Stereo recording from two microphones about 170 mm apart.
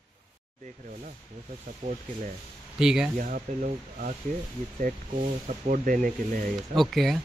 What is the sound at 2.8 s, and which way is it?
Speech, 5° right (ahead or behind).